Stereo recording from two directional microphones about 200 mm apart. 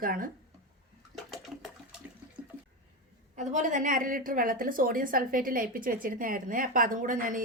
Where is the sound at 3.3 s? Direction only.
40° right (ahead or behind).